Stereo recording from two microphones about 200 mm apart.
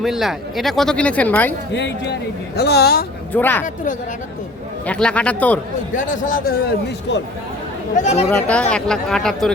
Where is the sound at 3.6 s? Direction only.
40° left (ahead or behind).